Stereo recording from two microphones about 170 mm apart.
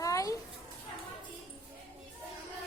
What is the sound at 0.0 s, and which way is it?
Children playing, 20° left (ahead or behind).